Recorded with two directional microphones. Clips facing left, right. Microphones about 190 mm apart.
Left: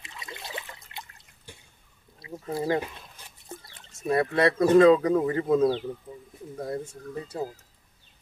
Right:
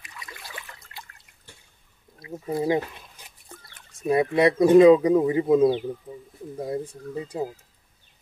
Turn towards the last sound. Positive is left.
turn(degrees=-15)  # may be behind; listen again after turning